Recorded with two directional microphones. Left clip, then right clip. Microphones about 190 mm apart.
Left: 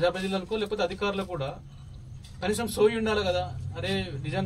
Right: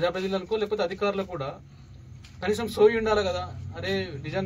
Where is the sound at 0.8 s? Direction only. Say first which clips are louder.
Right 2 dB; 15° left (ahead or behind).